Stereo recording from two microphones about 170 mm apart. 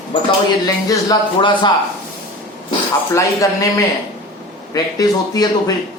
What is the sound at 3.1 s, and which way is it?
Speech, 20° left (ahead or behind).